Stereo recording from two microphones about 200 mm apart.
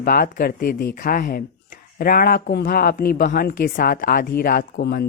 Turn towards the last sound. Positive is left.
turn(degrees=50)  # may be behind; listen again after turning